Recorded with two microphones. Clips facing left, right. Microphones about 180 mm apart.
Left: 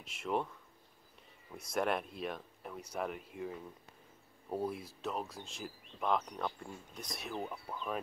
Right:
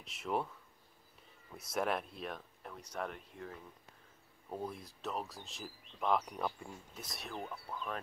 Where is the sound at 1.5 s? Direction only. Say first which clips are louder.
Left 2 dB; centre (ahead or behind).